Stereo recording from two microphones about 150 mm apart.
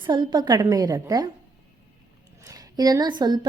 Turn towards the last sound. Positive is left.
turn(degrees=-30)  # may be behind; listen again after turning